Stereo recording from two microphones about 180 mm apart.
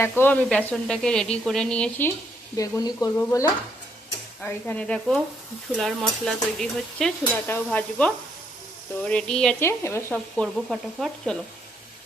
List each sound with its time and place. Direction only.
0.0 s speech: 10° left (ahead or behind)
0.4 s sizzle: 5° left (ahead or behind)
2.6 s speech: 20° left (ahead or behind)
4.4 s sizzle: 5° left (ahead or behind)
7.5 s speech: 10° left (ahead or behind)
9.0 s sizzle: 5° left (ahead or behind)